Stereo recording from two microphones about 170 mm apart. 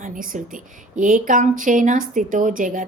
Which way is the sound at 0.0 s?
50° right (ahead or behind).